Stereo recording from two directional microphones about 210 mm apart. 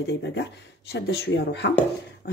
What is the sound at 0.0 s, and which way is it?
Speech, 55° left (ahead or behind).